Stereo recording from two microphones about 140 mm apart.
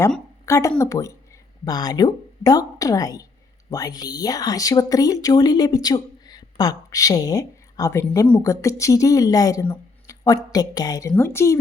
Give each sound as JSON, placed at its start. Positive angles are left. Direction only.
{"t": 0.4, "sound": "speech", "side_deg": 20}